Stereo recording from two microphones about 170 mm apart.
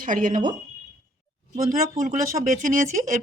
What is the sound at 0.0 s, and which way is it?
Speech, 50° right (ahead or behind).